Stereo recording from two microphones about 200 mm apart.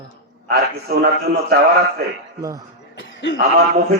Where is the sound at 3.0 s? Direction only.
65° left (ahead or behind).